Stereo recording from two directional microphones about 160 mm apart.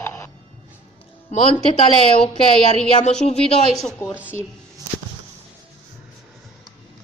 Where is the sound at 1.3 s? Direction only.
40° left (ahead or behind).